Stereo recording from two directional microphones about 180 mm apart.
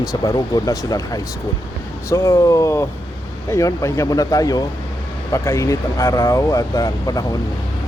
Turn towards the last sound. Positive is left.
turn(degrees=20)  # may be behind; listen again after turning